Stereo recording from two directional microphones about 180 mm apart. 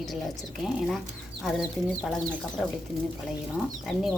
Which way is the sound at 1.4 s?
5° right (ahead or behind).